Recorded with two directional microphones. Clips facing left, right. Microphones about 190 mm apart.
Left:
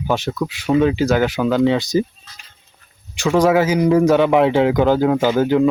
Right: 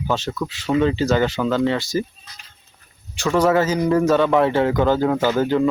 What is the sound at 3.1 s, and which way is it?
A man's voice, 15° left (ahead or behind).